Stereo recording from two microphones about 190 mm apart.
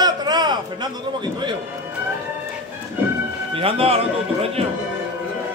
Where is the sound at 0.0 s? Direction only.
20° right (ahead or behind).